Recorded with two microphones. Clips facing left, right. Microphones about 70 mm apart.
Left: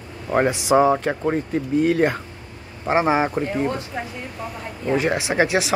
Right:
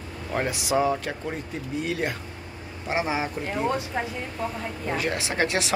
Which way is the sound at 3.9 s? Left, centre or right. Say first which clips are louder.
Right 1 dB; centre.